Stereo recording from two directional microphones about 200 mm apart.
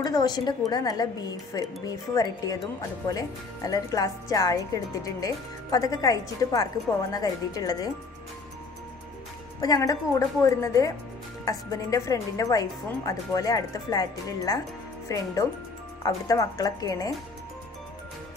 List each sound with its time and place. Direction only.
0.0 s a woman's voice: 20° left (ahead or behind)
9.6 s speech: 20° left (ahead or behind)